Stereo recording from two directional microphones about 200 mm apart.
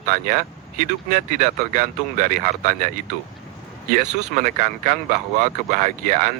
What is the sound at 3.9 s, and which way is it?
Speech, 40° right (ahead or behind).